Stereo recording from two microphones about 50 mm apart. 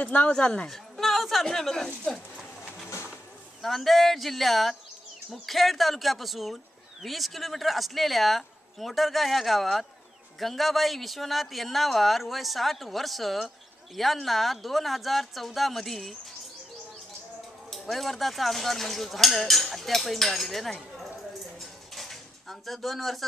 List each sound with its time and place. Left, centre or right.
0.0 s speech: left
0.7 s speech: centre
3.6 s speech: centre
17.6 s speech: centre
21.5 s a sound: centre